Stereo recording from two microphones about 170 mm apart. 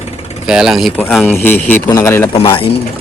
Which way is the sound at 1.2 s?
10° left (ahead or behind).